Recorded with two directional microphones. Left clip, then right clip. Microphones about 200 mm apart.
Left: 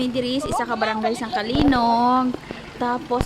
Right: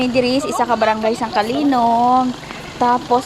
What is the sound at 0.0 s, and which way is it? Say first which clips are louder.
Speech: right 7 dB; centre (ahead or behind).